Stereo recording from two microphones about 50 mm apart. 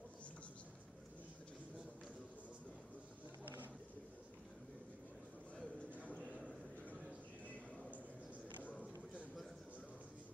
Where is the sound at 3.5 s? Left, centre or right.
Right.